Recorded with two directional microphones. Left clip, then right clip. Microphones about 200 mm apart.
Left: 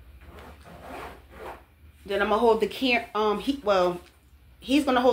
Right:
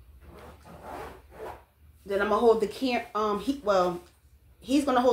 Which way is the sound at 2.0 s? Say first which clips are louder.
Left 1 dB; 20° left (ahead or behind).